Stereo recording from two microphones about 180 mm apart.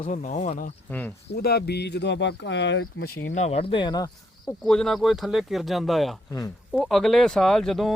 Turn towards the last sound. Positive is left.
turn(degrees=0)  # may be behind; listen again after turning